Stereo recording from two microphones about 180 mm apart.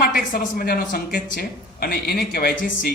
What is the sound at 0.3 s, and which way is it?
Speech, 55° left (ahead or behind).